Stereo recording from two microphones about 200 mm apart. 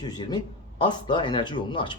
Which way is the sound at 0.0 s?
20° left (ahead or behind).